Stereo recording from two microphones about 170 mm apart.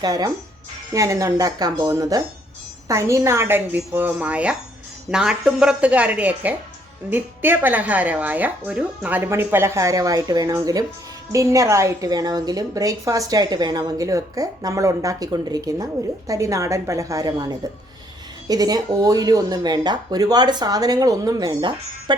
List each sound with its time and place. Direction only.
0.0 s a woman's voice: 20° right (ahead or behind)